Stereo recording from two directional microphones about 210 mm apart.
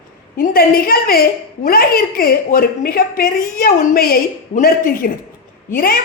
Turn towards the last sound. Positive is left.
turn(degrees=45)  # may be behind; listen again after turning